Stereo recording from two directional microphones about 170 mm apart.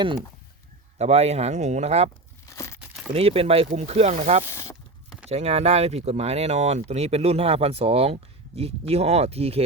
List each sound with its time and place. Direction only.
0.9 s speech: 40° right (ahead or behind)
2.5 s crumpling: 15° left (ahead or behind)
2.8 s a sound: centre (ahead or behind)
3.1 s speech: 35° right (ahead or behind)
4.4 s speech: 15° left (ahead or behind)
5.3 s speech: 40° right (ahead or behind)